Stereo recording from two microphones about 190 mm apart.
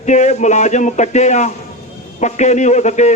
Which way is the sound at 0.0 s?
40° left (ahead or behind).